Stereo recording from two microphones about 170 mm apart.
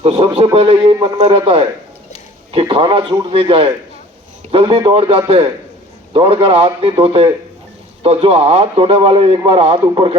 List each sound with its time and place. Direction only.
0.0 s a man's voice: 35° right (ahead or behind)